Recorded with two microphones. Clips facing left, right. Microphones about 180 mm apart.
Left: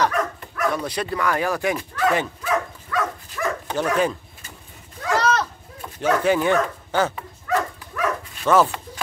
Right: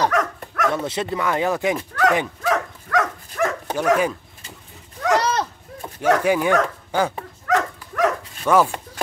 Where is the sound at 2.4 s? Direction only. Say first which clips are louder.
Right 2 dB; 80° right.